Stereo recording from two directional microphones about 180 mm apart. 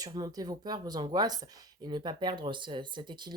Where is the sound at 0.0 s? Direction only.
20° right (ahead or behind).